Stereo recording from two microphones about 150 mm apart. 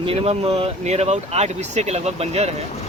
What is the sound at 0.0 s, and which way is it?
Speech, 40° right (ahead or behind).